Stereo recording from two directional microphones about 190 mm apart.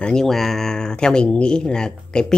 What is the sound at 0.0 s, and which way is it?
Speech, 5° left (ahead or behind).